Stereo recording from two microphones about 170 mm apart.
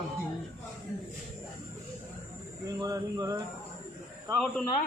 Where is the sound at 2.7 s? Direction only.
20° right (ahead or behind).